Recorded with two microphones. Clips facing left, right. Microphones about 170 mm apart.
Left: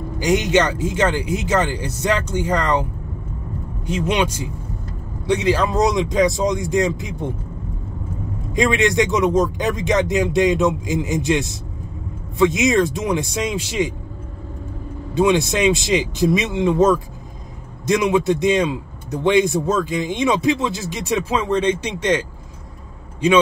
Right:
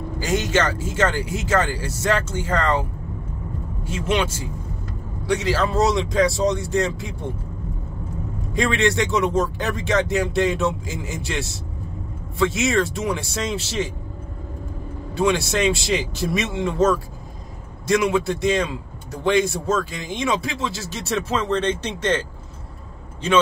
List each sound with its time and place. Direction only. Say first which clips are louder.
0.2 s a man's voice: left 4 dB; 15° left (ahead or behind)
8.5 s a man's voice: left 3 dB; 15° left (ahead or behind)
15.1 s a man's voice: left 4 dB; 20° left (ahead or behind)
23.2 s a man's voice: left 5 dB; 15° left (ahead or behind)